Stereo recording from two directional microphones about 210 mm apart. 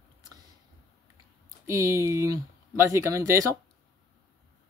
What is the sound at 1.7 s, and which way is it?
Speech, 15° right (ahead or behind).